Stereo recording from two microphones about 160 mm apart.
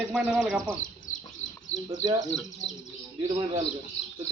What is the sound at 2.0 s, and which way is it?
Speech, 25° right (ahead or behind).